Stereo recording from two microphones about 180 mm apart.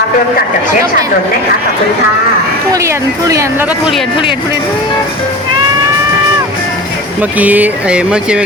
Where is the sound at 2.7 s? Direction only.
15° right (ahead or behind).